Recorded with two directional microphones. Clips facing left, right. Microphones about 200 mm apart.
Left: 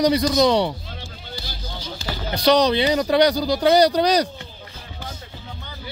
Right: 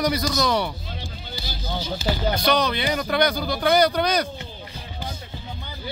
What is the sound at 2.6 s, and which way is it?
Speech, 30° left (ahead or behind).